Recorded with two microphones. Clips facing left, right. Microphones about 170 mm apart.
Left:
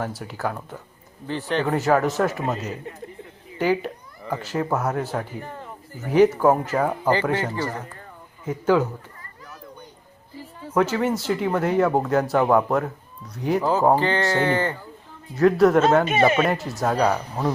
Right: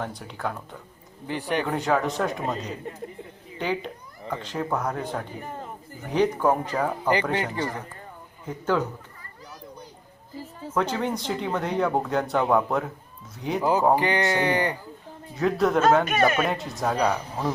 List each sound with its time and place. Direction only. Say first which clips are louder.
0.0 s speech: left 3 dB; 5° left (ahead or behind)
1.3 s speech: left 2 dB; 15° right (ahead or behind)
1.6 s speech: left 7 dB; 5° left (ahead or behind)
7.3 s speech: left 1 dB; 15° right (ahead or behind)
8.4 s speech: left 5 dB; 10° left (ahead or behind)
10.8 s speech: left 5 dB; 5° left (ahead or behind)
13.6 s speech: left 1 dB; 15° right (ahead or behind)
15.4 s speech: left 6 dB; centre (ahead or behind)
16.0 s speech: left 3 dB; 25° left (ahead or behind)
16.4 s speech: left 4 dB; centre (ahead or behind)